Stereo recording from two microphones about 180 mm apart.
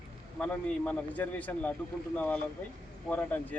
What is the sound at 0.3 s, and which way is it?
Speech, 5° left (ahead or behind).